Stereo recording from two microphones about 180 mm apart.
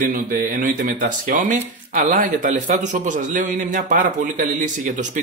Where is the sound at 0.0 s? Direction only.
50° right (ahead or behind).